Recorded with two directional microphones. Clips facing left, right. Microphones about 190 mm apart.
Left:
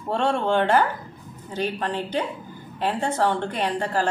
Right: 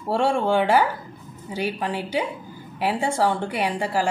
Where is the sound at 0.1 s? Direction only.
10° right (ahead or behind).